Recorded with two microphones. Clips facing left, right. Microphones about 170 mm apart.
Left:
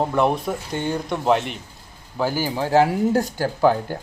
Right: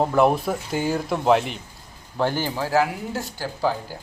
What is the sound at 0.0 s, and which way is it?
Speech, centre (ahead or behind).